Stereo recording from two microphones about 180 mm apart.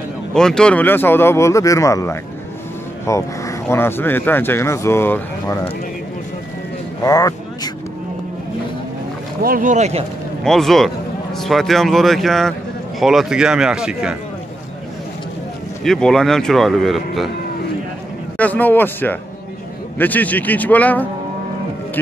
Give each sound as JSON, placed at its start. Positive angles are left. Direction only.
{"t": 0.3, "sound": "speech", "side_deg": 5}
{"t": 7.0, "sound": "vehicle", "side_deg": 20}
{"t": 9.4, "sound": "speech", "side_deg": -50}
{"t": 10.4, "sound": "speech", "side_deg": 0}
{"t": 15.8, "sound": "speech", "side_deg": 5}
{"t": 18.4, "sound": "speech", "side_deg": 10}